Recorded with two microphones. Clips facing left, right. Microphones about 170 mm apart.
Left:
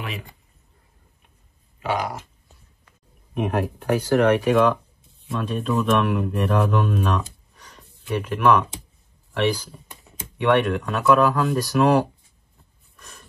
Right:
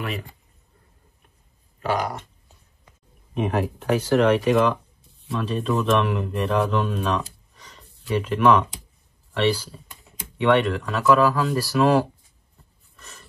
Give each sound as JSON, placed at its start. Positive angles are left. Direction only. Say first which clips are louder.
{"t": 1.8, "sound": "speech", "louder": "right 1 dB", "side_deg": 0}
{"t": 3.3, "sound": "speech", "louder": "even", "side_deg": 10}
{"t": 7.7, "sound": "a sound", "louder": "left 1 dB", "side_deg": 15}
{"t": 8.2, "sound": "speech", "louder": "right 1 dB", "side_deg": 10}
{"t": 10.5, "sound": "speech", "louder": "even", "side_deg": 0}
{"t": 11.1, "sound": "speech", "louder": "even", "side_deg": 15}
{"t": 11.3, "sound": "speech", "louder": "left 1 dB", "side_deg": 0}
{"t": 11.6, "sound": "speech", "louder": "even", "side_deg": 15}